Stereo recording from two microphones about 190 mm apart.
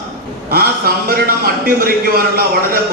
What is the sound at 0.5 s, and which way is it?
A man's voice, 50° right (ahead or behind).